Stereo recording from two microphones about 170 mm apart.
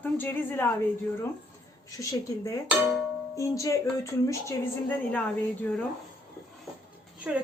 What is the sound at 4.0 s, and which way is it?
Speech, 15° left (ahead or behind).